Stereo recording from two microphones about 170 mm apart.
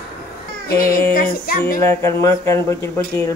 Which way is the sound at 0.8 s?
60° left (ahead or behind).